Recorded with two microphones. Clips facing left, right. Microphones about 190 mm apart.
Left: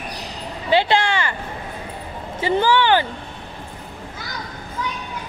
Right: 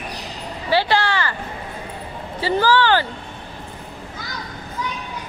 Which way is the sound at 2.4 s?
20° left (ahead or behind).